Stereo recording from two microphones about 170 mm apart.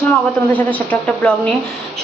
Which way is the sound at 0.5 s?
10° left (ahead or behind).